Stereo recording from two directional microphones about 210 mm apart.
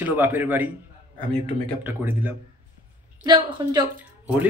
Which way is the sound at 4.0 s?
10° right (ahead or behind).